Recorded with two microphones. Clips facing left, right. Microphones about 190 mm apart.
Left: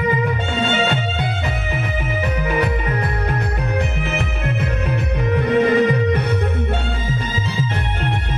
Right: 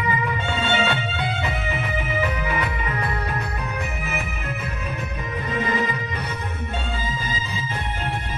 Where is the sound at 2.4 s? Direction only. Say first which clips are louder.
Left 6 dB; 45° left (ahead or behind).